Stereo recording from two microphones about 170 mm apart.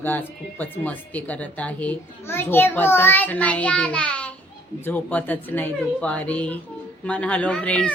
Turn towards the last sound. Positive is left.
turn(degrees=5)  # may be behind; listen again after turning